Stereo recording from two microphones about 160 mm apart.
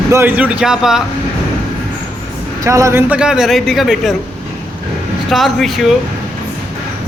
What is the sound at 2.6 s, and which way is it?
Speech, 20° right (ahead or behind).